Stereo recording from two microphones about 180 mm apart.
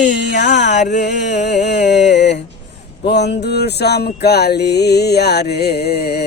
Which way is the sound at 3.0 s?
70° left (ahead or behind).